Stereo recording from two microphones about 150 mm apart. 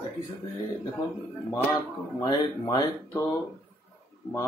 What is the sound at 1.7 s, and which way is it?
Speech, 25° left (ahead or behind).